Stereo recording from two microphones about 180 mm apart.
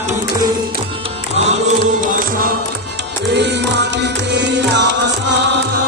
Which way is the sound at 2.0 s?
45° right (ahead or behind).